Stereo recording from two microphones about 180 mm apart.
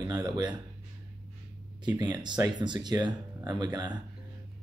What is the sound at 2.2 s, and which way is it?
Speech, 25° right (ahead or behind).